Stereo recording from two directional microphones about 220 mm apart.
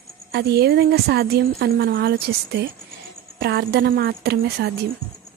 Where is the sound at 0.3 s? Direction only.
45° right (ahead or behind).